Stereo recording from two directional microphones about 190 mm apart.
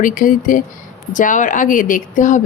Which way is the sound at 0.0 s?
45° left (ahead or behind).